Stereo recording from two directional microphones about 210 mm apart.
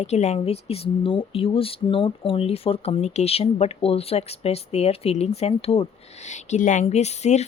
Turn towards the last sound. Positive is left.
turn(degrees=30)  # may be behind; listen again after turning